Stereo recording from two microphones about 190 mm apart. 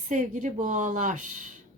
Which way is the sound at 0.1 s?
40° right (ahead or behind).